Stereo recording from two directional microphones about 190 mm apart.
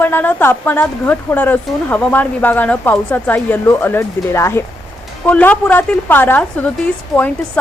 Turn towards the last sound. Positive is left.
turn(degrees=10)  # may be behind; listen again after turning